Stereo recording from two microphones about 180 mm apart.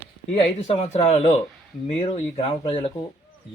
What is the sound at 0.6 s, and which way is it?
Speech, 40° left (ahead or behind).